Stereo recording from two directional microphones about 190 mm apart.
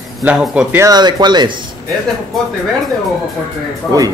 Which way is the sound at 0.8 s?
20° right (ahead or behind).